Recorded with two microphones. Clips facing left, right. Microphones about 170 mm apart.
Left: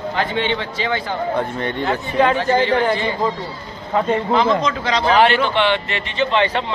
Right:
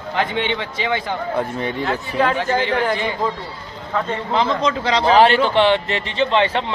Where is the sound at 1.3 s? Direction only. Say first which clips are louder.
Left 1 dB; centre (ahead or behind).